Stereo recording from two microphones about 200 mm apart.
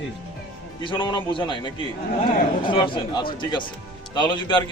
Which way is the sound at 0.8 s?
25° left (ahead or behind).